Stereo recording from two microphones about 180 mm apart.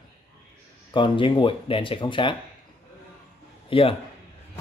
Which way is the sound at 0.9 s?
25° left (ahead or behind).